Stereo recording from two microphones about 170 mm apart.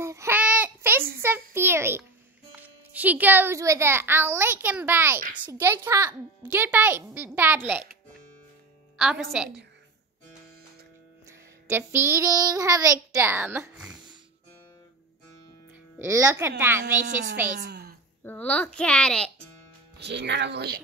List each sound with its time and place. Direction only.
0.0 s child singing: 15° right (ahead or behind)
1.2 s a sound: 15° right (ahead or behind)
2.5 s a child's voice: 10° right (ahead or behind)
8.9 s a woman's voice: centre (ahead or behind)
11.7 s a child's voice: 15° right (ahead or behind)
16.0 s a child's voice: 15° right (ahead or behind)
16.8 s speech: 90° right
17.6 s a sound: 70° right (ahead or behind)
18.2 s a woman's voice: 10° left (ahead or behind)
20.0 s speech: 90° right